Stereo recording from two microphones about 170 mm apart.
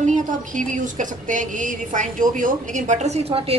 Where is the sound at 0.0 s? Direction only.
45° right (ahead or behind).